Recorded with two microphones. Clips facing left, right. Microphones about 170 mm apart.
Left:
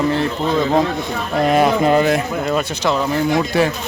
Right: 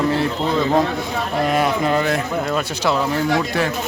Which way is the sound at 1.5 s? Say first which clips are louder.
Left 6 dB; 20° left (ahead or behind).